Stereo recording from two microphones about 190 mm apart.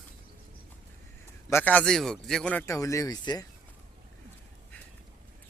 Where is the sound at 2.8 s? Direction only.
15° left (ahead or behind).